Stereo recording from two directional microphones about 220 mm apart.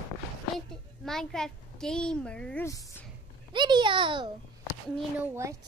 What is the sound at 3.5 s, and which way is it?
Speech, 20° right (ahead or behind).